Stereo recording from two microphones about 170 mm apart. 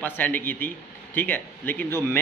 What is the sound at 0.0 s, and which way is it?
A man's voice, 10° left (ahead or behind).